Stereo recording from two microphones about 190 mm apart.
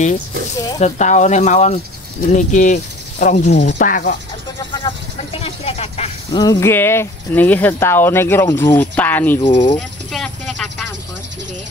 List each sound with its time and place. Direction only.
0.7 s speech: 40° left (ahead or behind)
4.8 s speech: 30° left (ahead or behind)
6.3 s speech: 20° left (ahead or behind)
9.4 s speech: 30° left (ahead or behind)
9.8 s a sound: centre (ahead or behind)